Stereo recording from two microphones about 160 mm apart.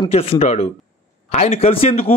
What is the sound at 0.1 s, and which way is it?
Speech, 40° left (ahead or behind).